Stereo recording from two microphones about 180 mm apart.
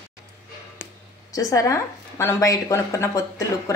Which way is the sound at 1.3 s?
20° left (ahead or behind).